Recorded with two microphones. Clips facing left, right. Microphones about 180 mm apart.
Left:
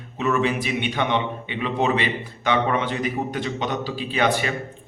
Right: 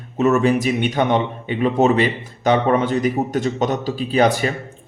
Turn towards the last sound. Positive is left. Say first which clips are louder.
# right 5 dB
turn(degrees=-40)  # may be behind; listen again after turning